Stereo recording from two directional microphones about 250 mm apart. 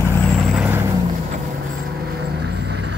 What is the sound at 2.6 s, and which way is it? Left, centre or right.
Vehicle, right.